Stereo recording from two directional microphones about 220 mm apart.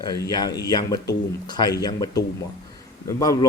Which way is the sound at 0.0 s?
20° left (ahead or behind).